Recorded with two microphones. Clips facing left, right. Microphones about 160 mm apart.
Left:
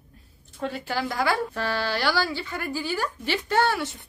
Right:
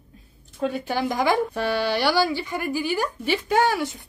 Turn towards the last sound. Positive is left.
turn(degrees=-10)  # may be behind; listen again after turning